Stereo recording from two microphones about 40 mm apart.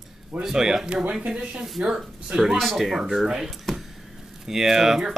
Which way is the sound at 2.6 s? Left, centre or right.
Centre.